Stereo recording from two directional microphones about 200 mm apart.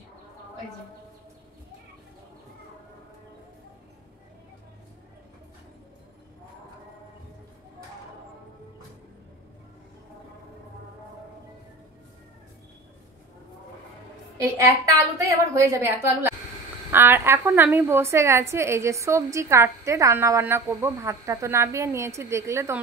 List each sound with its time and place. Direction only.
14.4 s a woman's voice: 15° right (ahead or behind)